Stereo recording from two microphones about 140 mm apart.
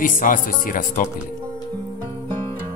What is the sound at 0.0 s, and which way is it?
Speech, 75° left (ahead or behind).